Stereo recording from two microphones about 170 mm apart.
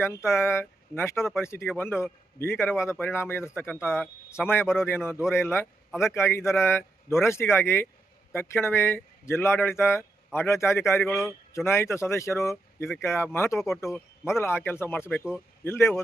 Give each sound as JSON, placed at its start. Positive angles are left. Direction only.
{"t": 0.3, "sound": "speech", "side_deg": 15}
{"t": 11.0, "sound": "a man's voice", "side_deg": 0}
{"t": 11.3, "sound": "speech", "side_deg": 15}